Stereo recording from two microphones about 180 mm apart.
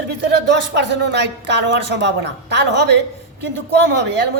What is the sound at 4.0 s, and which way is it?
Speech, 75° right (ahead or behind).